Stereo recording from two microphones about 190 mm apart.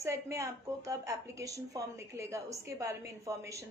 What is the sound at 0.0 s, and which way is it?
A woman's voice, 15° right (ahead or behind).